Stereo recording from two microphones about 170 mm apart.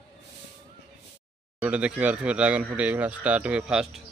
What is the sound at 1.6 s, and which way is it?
Speech, 5° right (ahead or behind).